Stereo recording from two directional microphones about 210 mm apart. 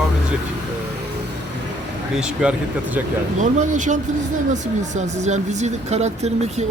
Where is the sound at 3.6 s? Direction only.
35° right (ahead or behind).